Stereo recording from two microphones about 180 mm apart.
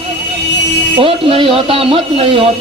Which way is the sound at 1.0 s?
30° right (ahead or behind).